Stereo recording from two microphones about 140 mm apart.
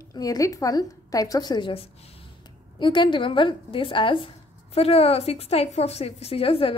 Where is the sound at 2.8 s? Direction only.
35° left (ahead or behind).